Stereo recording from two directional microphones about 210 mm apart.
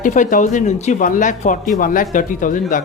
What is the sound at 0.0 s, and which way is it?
A man's voice, 40° left (ahead or behind).